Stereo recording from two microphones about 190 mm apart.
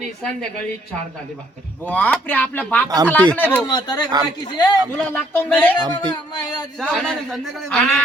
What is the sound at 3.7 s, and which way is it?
Speech, 20° left (ahead or behind).